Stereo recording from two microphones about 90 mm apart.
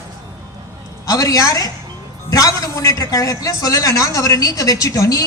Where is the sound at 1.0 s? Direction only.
40° left (ahead or behind).